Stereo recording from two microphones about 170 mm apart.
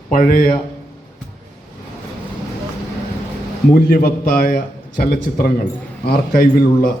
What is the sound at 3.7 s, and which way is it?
A man's voice, 55° left (ahead or behind).